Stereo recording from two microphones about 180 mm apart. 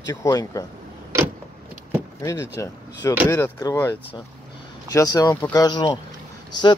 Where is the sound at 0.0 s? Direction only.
15° left (ahead or behind).